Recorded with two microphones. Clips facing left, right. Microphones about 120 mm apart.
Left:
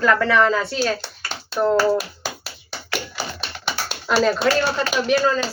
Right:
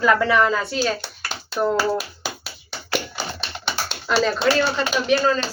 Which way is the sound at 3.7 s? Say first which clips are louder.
Left 1 dB; 10° left (ahead or behind).